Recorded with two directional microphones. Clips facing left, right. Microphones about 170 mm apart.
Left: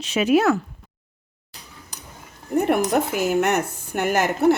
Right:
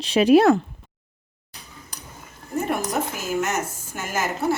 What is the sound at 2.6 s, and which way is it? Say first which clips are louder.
A woman's voice: left 5 dB; 60° left (ahead or behind).